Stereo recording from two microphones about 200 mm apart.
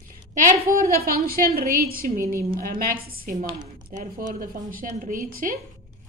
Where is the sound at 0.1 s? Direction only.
40° right (ahead or behind).